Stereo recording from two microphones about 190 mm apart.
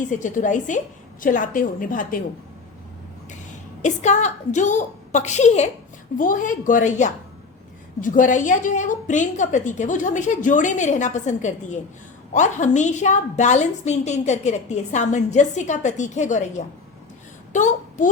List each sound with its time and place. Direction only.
0.0 s a woman's voice: 40° left (ahead or behind)
3.8 s a woman's voice: 40° left (ahead or behind)